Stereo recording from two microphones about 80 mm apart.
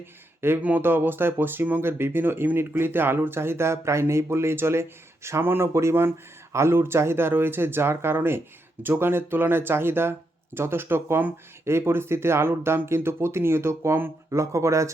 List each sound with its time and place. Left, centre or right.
0.0 s speech: right